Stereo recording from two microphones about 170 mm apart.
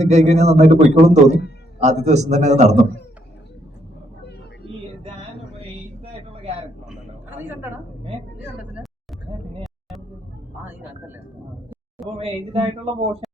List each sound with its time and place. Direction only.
0.0 s a man's voice: 40° right (ahead or behind)
6.8 s a sound: 10° right (ahead or behind)
10.6 s music: 10° right (ahead or behind)
12.0 s a man's voice: 35° right (ahead or behind)